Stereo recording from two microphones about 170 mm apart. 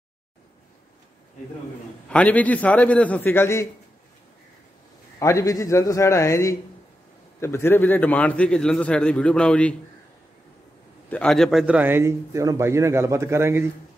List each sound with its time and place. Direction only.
2.0 s a man's voice: 10° left (ahead or behind)
5.2 s a man's voice: 20° left (ahead or behind)
11.1 s a man's voice: 5° left (ahead or behind); by 13.7 s 15° right (ahead or behind)